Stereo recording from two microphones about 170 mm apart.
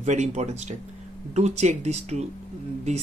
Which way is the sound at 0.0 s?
45° right (ahead or behind).